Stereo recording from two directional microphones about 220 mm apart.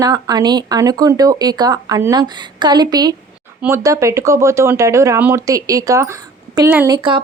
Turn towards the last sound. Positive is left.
turn(degrees=-20)  # may be behind; listen again after turning